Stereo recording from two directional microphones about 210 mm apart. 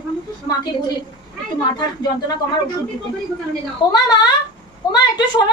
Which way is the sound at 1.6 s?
20° left (ahead or behind).